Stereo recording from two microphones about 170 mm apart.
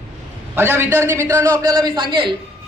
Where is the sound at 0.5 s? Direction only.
15° right (ahead or behind); by 2.3 s 30° right (ahead or behind).